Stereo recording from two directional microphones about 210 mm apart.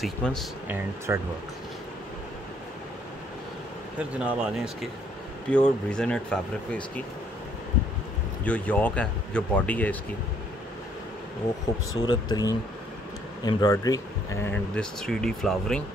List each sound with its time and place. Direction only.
0.0 s speech: centre (ahead or behind)
0.7 s speech: 10° right (ahead or behind)
4.2 s speech: 5° right (ahead or behind)
8.5 s speech: 5° left (ahead or behind)
11.9 s speech: 20° left (ahead or behind); by 15.8 s centre (ahead or behind)